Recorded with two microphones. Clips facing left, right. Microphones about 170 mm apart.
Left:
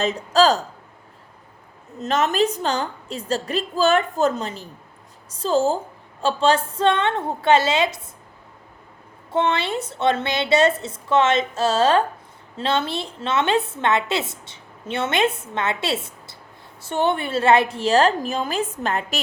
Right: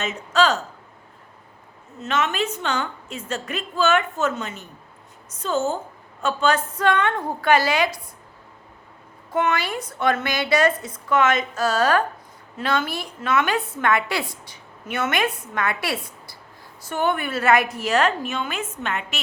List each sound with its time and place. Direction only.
0.0 s speech: 35° left (ahead or behind)
2.0 s a woman's voice: 35° left (ahead or behind)
9.3 s a woman's voice: 25° left (ahead or behind)